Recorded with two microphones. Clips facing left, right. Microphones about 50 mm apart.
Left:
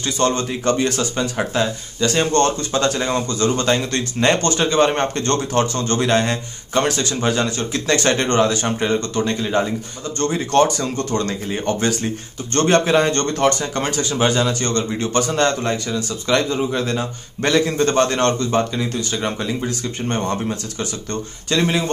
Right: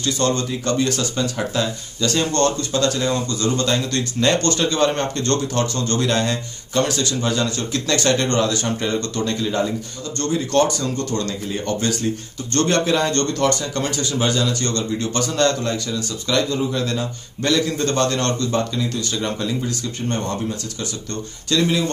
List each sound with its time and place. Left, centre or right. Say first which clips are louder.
0.0 s speech: left 1 dB; left